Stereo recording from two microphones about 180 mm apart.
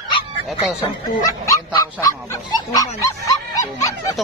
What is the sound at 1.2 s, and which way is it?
Goose, 20° left (ahead or behind).